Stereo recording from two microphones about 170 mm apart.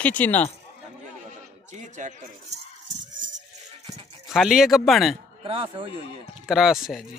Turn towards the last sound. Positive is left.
turn(degrees=0)  # may be behind; listen again after turning